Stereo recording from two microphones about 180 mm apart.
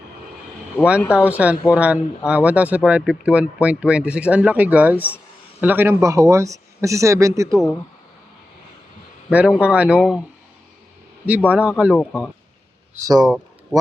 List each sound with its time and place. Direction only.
1.1 s speech: 10° right (ahead or behind)
9.3 s speech: 5° right (ahead or behind)
11.3 s speech: 10° right (ahead or behind)
11.9 s speech: 5° left (ahead or behind)
13.0 s speech: 20° right (ahead or behind)
13.2 s a sound: centre (ahead or behind)